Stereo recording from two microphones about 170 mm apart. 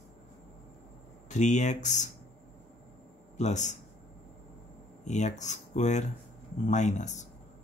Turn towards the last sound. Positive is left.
turn(degrees=45)  # may be behind; listen again after turning